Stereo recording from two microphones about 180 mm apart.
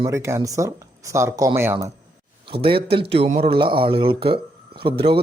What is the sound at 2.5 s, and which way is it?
Speech, 30° right (ahead or behind).